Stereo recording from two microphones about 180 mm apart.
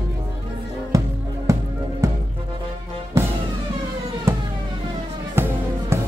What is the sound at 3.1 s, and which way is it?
Music, 15° right (ahead or behind).